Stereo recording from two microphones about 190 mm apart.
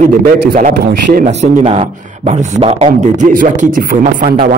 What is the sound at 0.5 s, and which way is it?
A man's voice, 40° right (ahead or behind).